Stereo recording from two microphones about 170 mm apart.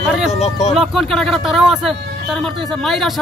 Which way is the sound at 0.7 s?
Centre (ahead or behind).